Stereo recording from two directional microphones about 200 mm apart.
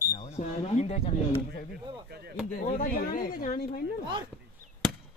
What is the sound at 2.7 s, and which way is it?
Speech, 45° left (ahead or behind).